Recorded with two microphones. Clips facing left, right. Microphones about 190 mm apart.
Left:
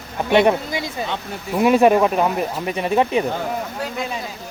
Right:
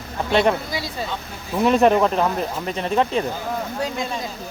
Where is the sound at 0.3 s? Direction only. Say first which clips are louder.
Left 3 dB; 15° left (ahead or behind).